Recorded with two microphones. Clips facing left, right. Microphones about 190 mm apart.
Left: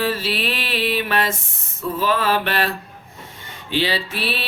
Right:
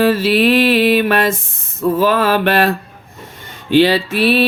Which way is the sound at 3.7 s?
55° right (ahead or behind).